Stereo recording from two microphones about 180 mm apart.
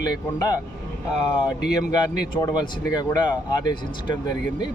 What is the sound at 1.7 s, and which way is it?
Speech, 25° left (ahead or behind).